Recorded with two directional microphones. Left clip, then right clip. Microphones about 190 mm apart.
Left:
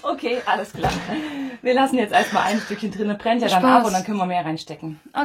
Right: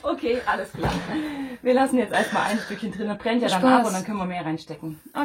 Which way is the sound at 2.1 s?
10° left (ahead or behind).